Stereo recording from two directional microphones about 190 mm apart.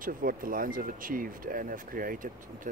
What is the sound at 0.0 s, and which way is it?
Speech, 45° right (ahead or behind).